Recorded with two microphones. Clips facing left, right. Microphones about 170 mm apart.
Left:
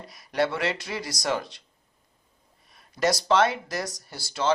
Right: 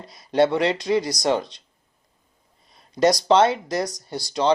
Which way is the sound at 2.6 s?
20° right (ahead or behind).